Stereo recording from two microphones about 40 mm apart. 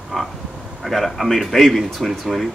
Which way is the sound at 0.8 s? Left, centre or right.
Centre.